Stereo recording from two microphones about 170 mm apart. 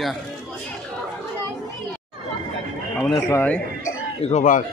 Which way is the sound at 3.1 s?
20° left (ahead or behind).